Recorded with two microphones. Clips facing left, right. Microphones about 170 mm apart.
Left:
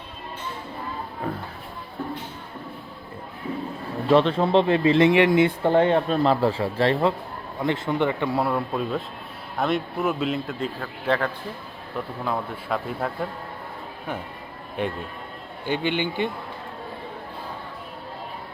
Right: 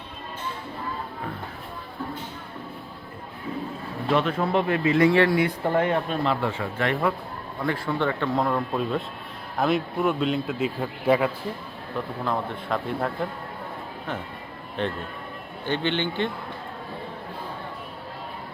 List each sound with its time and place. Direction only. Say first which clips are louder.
4.1 s speech: left 5 dB; 30° left (ahead or behind)
7.6 s a man's voice: left 2 dB; 20° left (ahead or behind); by 11.3 s 10° right (ahead or behind)
12.2 s a man's voice: even; 5° left (ahead or behind)
14.8 s speech: left 1 dB; 10° left (ahead or behind)